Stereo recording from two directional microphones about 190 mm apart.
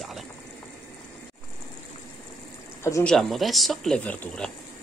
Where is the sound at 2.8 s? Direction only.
15° left (ahead or behind).